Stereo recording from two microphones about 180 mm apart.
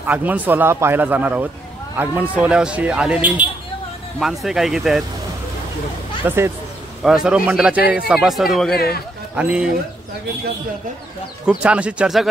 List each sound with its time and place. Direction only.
0.0 s speech: 10° right (ahead or behind)
6.2 s speech: 15° right (ahead or behind)
7.0 s speech: 5° right (ahead or behind)
8.7 s a man's voice: 60° left (ahead or behind)
9.3 s speech: 5° right (ahead or behind)
11.4 s speech: 5° right (ahead or behind)